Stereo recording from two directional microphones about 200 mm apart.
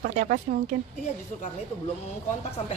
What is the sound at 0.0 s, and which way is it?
Speech, 40° right (ahead or behind).